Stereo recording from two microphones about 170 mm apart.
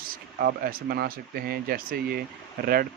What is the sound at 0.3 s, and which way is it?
Speech, 60° right (ahead or behind).